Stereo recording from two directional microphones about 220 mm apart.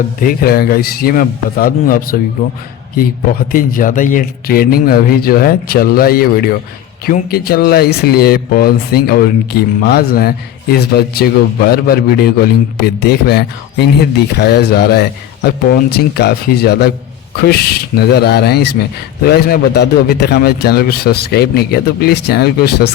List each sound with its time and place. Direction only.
0.2 s speech: 40° left (ahead or behind)
3.5 s speech: 40° left (ahead or behind)